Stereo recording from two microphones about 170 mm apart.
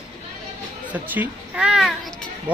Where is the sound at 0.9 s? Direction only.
10° right (ahead or behind).